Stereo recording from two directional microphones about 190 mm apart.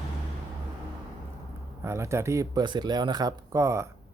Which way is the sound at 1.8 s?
15° right (ahead or behind).